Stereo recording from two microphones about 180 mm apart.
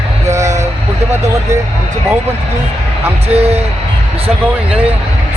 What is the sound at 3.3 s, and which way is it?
Speech, 35° right (ahead or behind).